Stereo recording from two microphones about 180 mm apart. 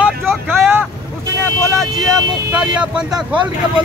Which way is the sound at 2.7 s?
5° right (ahead or behind).